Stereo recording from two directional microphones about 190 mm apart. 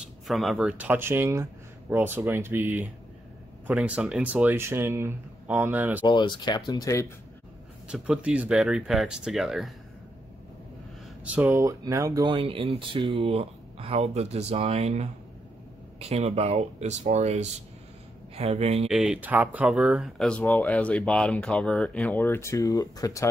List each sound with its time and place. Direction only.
0.0 s speech: centre (ahead or behind)
6.0 s speech: 25° left (ahead or behind)
7.9 s speech: 5° right (ahead or behind)
11.2 s speech: 10° right (ahead or behind); by 18.9 s 35° right (ahead or behind)
18.9 s speech: centre (ahead or behind); by 23.2 s 20° left (ahead or behind)